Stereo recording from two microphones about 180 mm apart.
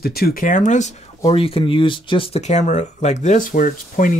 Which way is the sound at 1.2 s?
30° left (ahead or behind).